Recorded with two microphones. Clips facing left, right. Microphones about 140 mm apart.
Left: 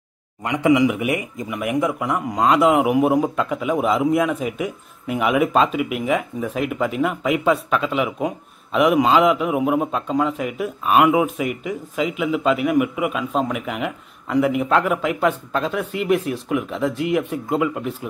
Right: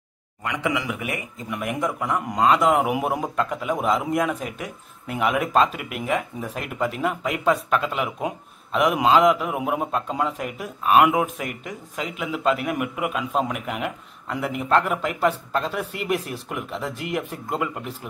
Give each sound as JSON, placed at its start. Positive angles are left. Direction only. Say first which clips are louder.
{"t": 0.4, "sound": "speech", "louder": "left 10 dB", "side_deg": 25}
{"t": 1.5, "sound": "speech", "louder": "left 4 dB", "side_deg": 5}